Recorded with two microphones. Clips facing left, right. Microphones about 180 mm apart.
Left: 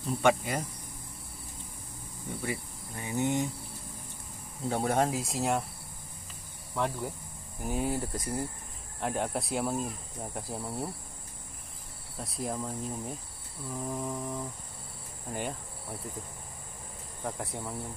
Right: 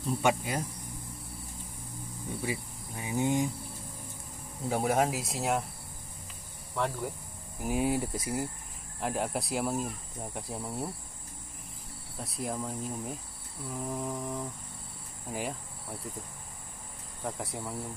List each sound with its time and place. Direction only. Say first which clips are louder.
0.0 s speech: left 2 dB; 5° right (ahead or behind)
2.4 s speech: even; 15° right (ahead or behind)
4.6 s speech: even; 5° right (ahead or behind)
6.7 s speech: even; 5° left (ahead or behind)
7.6 s speech: right 2 dB; 15° right (ahead or behind)
12.2 s speech: even; centre (ahead or behind)
17.2 s speech: even; centre (ahead or behind)